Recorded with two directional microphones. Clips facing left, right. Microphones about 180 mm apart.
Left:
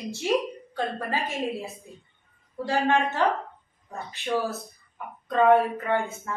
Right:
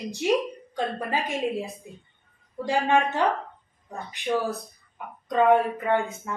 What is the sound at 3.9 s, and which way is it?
A woman's voice, 15° right (ahead or behind).